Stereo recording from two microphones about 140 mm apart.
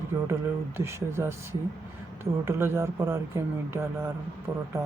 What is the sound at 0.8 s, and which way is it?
Speech, 20° right (ahead or behind).